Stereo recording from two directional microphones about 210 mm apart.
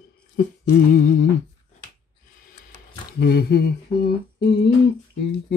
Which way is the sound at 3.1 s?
50° left (ahead or behind).